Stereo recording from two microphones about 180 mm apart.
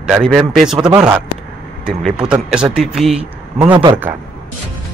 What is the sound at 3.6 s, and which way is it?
Speech, 25° right (ahead or behind).